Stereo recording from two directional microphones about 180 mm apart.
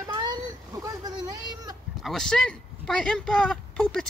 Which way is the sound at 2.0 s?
Centre (ahead or behind).